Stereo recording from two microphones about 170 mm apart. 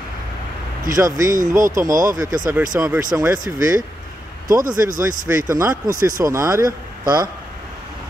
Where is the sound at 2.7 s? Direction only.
10° right (ahead or behind).